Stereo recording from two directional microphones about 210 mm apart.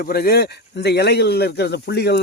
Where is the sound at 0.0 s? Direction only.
45° left (ahead or behind).